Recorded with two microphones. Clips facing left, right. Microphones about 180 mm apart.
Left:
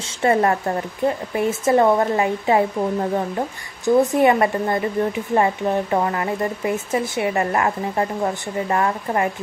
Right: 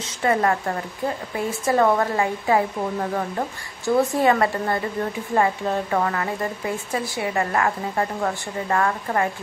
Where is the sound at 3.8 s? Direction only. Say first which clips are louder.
Left 4 dB; 20° left (ahead or behind).